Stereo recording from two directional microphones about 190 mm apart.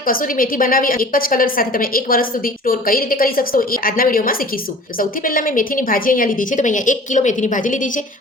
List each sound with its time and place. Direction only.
0.0 s a woman's voice: 50° left (ahead or behind)